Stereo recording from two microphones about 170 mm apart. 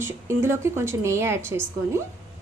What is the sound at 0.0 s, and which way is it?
A woman's voice, 15° right (ahead or behind).